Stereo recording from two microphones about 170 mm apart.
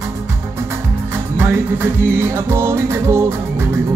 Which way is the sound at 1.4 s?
15° right (ahead or behind).